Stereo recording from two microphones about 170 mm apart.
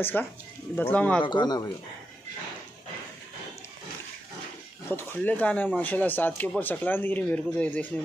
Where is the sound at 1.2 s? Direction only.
25° left (ahead or behind).